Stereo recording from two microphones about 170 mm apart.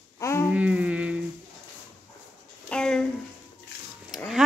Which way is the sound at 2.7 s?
5° left (ahead or behind).